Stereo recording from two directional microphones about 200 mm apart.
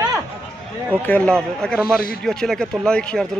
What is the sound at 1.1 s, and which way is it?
Speech, 5° left (ahead or behind).